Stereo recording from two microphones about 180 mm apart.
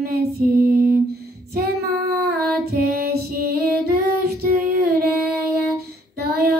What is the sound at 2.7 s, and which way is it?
Female singing, 60° right (ahead or behind).